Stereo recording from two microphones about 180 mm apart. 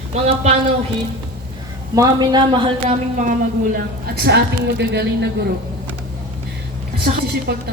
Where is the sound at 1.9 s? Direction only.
20° right (ahead or behind).